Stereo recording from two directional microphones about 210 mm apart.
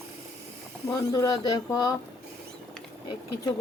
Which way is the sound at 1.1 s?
20° left (ahead or behind).